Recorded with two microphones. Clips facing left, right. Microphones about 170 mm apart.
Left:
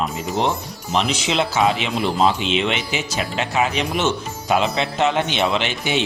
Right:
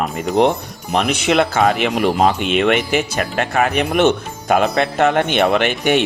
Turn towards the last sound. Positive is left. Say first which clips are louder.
# right 6 dB
turn(degrees=-55)  # may be behind; listen again after turning